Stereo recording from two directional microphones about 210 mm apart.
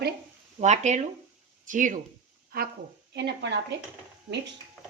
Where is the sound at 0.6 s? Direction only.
35° right (ahead or behind); by 3.8 s 55° right (ahead or behind).